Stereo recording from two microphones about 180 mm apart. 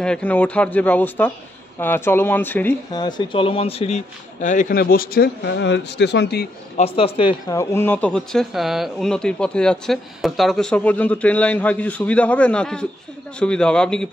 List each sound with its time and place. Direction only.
0.0 s speech: 5° left (ahead or behind)
2.9 s a man's voice: 25° left (ahead or behind); by 6.5 s 65° left (ahead or behind)
6.8 s a man's voice: 30° left (ahead or behind); by 14.0 s 5° left (ahead or behind)